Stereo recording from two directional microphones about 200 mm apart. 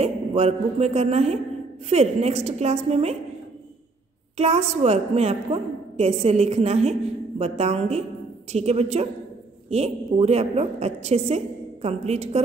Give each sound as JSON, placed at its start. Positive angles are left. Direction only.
{"t": 0.0, "sound": "a man's voice", "side_deg": -30}
{"t": 4.4, "sound": "a woman's voice", "side_deg": -30}